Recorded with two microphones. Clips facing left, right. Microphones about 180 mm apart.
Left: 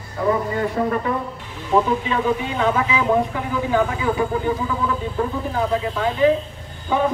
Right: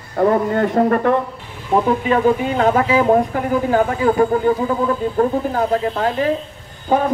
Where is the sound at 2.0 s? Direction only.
45° right (ahead or behind).